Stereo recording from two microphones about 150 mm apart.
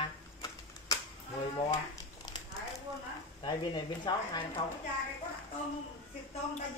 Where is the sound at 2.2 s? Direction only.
25° left (ahead or behind).